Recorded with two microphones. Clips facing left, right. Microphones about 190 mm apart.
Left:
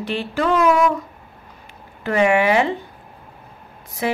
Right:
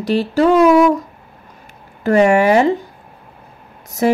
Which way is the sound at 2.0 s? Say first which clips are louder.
Right 5 dB; 40° right (ahead or behind).